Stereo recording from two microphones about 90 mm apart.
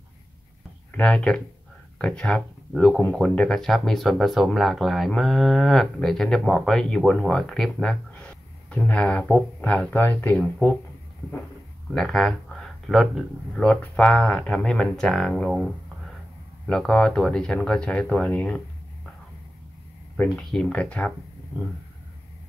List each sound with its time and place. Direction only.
0.9 s speech: 10° left (ahead or behind)
8.1 s speech: 15° left (ahead or behind)
11.9 s speech: 5° left (ahead or behind)
13.6 s speech: 10° left (ahead or behind)
16.6 s speech: 10° left (ahead or behind)
20.3 s speech: 10° left (ahead or behind)